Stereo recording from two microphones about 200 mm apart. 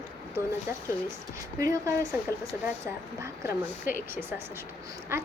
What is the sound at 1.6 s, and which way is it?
Speech, 15° right (ahead or behind).